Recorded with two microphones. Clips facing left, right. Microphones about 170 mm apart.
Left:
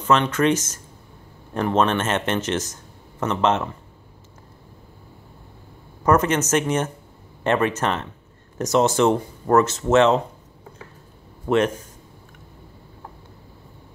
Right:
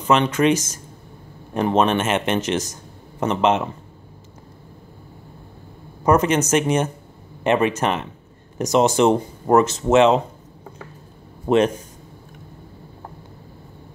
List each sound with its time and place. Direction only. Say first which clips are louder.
0.0 s speech: right 2 dB; 15° right (ahead or behind)
6.0 s speech: right 2 dB; 15° right (ahead or behind)
11.4 s speech: right 3 dB; 20° right (ahead or behind)